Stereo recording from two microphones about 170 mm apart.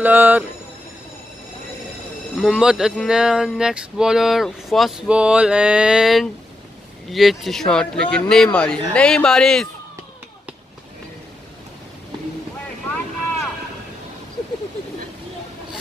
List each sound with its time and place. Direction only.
0.0 s speech: 10° right (ahead or behind)
2.3 s speech: 5° right (ahead or behind)